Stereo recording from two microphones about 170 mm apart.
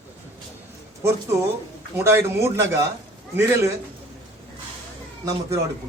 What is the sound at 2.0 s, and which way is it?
A man's voice, 15° right (ahead or behind).